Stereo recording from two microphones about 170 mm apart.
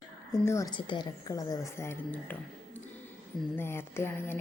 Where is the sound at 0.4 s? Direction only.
20° left (ahead or behind).